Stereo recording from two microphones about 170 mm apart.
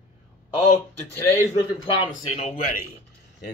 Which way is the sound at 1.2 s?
25° left (ahead or behind).